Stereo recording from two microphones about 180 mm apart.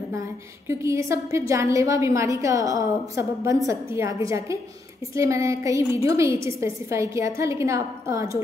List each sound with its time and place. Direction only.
0.7 s a woman's voice: 15° right (ahead or behind)